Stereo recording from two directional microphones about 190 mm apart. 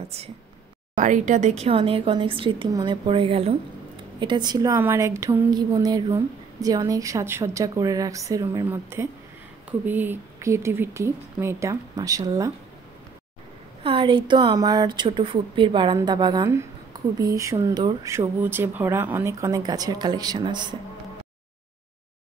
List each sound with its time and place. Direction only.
0.9 s a woman's voice: 40° right (ahead or behind); by 12.5 s 20° right (ahead or behind)
13.8 s a woman's voice: 25° right (ahead or behind)
17.0 s a sound: 20° right (ahead or behind)
17.4 s speech: 15° right (ahead or behind)